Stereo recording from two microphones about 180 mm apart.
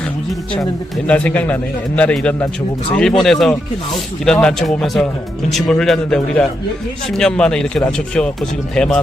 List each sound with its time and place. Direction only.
0.5 s speech: 5° left (ahead or behind)